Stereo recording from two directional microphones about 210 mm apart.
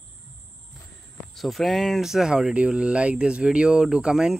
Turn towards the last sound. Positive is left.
turn(degrees=-5)  # may be behind; listen again after turning